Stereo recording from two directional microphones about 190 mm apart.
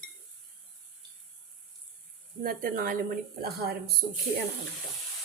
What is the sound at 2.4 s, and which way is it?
Speech, 50° right (ahead or behind).